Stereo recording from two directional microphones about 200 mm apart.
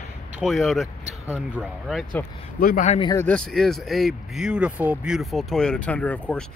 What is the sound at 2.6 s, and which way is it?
Speech, 45° left (ahead or behind).